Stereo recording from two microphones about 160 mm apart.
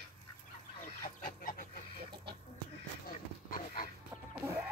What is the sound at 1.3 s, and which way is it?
Goose, 55° left (ahead or behind).